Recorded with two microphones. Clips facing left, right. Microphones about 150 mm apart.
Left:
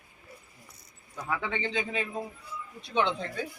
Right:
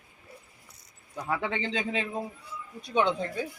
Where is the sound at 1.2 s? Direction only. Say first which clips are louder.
Right 2 dB; 30° right (ahead or behind).